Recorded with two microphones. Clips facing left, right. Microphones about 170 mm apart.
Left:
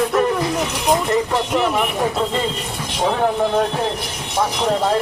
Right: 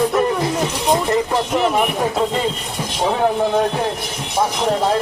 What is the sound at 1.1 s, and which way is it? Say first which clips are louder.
Speech: right 1 dB; centre (ahead or behind).